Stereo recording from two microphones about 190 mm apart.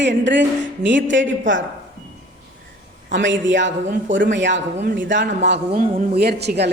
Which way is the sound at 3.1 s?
75° right (ahead or behind).